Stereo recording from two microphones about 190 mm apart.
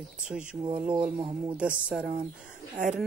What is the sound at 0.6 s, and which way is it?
Speech, 25° right (ahead or behind).